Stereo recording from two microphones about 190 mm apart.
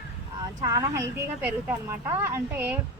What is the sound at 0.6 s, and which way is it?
A woman's voice, 20° right (ahead or behind).